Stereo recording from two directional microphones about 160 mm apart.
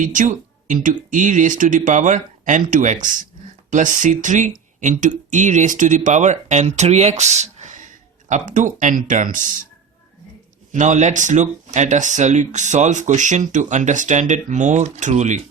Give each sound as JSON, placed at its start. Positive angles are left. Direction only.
{"t": 0.0, "sound": "speech", "side_deg": -55}
{"t": 10.7, "sound": "speech", "side_deg": -50}